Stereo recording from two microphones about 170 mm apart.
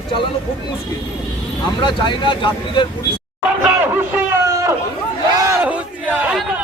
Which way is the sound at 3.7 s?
10° right (ahead or behind).